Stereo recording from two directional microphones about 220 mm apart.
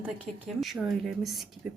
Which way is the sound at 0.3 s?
35° right (ahead or behind).